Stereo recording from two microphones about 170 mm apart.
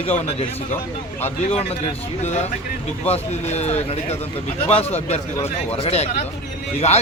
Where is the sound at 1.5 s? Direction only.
35° left (ahead or behind).